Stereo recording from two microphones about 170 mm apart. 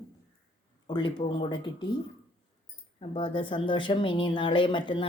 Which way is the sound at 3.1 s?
30° left (ahead or behind).